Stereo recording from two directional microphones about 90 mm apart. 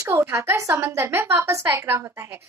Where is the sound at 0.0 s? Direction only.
30° right (ahead or behind).